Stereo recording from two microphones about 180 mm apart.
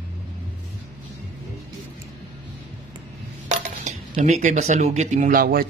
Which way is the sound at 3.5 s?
40° right (ahead or behind).